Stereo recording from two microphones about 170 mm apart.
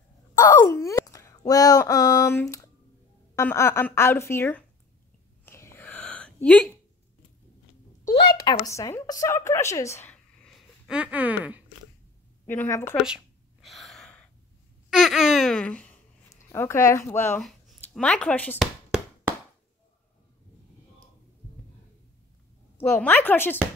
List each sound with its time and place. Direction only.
0.4 s a woman's voice: 20° left (ahead or behind)
5.4 s a sound: 15° left (ahead or behind)
8.5 s a woman's voice: 20° left (ahead or behind); by 11.6 s 10° right (ahead or behind)
12.4 s a woman's voice: 15° left (ahead or behind)
12.9 s a sound: 5° right (ahead or behind)
14.9 s speech: centre (ahead or behind)
17.4 s speech: centre (ahead or behind)
18.6 s a sound: 5° right (ahead or behind)
22.8 s a woman's voice: 15° left (ahead or behind)